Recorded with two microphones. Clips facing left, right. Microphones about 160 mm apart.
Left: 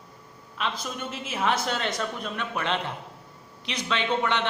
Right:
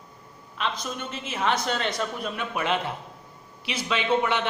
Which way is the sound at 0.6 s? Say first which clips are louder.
Right 1 dB; 5° left (ahead or behind).